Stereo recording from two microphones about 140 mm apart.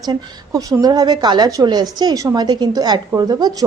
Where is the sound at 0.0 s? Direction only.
30° right (ahead or behind).